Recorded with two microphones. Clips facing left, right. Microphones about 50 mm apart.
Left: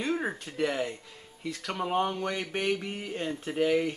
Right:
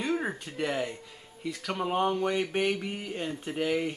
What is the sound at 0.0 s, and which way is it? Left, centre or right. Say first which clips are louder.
Speech: even; centre.